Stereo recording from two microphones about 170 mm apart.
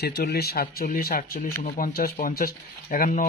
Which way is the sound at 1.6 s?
45° left (ahead or behind).